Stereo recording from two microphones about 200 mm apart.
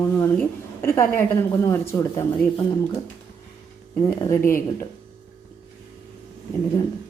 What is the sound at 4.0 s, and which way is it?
Speech, 15° left (ahead or behind).